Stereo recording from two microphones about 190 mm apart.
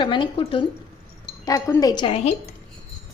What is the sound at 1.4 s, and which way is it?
Speech, 15° left (ahead or behind).